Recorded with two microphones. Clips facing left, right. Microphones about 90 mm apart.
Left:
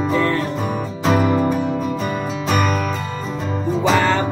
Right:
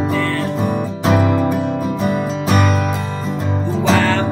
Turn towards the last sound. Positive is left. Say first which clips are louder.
# right 1 dB
turn(degrees=5)  # may be behind; listen again after turning